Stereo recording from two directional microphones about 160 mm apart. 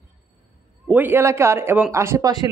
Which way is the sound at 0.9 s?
10° right (ahead or behind).